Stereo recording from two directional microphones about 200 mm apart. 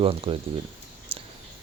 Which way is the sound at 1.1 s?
30° right (ahead or behind).